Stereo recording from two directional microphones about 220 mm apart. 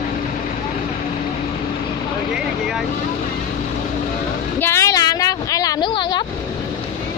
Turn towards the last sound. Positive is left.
turn(degrees=20)  # may be behind; listen again after turning